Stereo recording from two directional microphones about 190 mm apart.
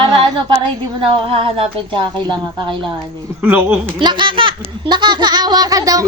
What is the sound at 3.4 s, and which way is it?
Speech, 10° right (ahead or behind).